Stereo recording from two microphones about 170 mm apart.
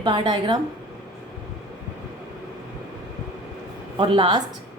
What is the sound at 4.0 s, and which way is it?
Speech, 30° right (ahead or behind).